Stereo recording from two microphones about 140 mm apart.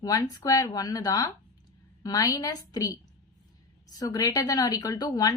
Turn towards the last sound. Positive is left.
turn(degrees=25)  # may be behind; listen again after turning